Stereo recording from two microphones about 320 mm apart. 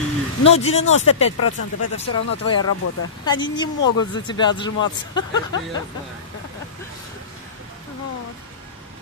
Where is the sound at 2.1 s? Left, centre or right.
Left.